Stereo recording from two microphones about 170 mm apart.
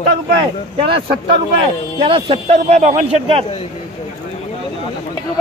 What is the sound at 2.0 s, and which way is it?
A man's voice, 30° right (ahead or behind).